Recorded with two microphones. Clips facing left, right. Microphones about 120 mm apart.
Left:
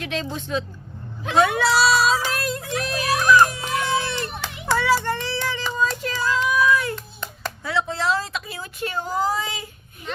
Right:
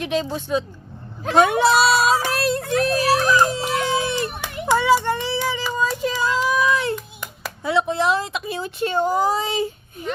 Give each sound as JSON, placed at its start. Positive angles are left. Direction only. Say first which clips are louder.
{"t": 0.0, "sound": "speech", "louder": "right 5 dB", "side_deg": -15}
{"t": 1.5, "sound": "speech", "louder": "right 3 dB", "side_deg": -20}
{"t": 2.0, "sound": "music", "louder": "right 2 dB", "side_deg": -60}
{"t": 2.3, "sound": "music", "louder": "right 6 dB", "side_deg": -30}
{"t": 4.0, "sound": "children playing", "louder": "right 4 dB", "side_deg": -15}
{"t": 4.7, "sound": "child singing", "louder": "right 3 dB", "side_deg": -20}
{"t": 6.9, "sound": "clapping", "louder": "right 4 dB", "side_deg": -10}